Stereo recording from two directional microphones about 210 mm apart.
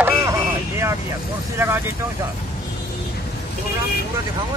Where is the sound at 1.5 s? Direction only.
10° right (ahead or behind).